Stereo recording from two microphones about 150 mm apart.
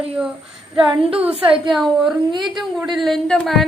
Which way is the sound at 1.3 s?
35° right (ahead or behind).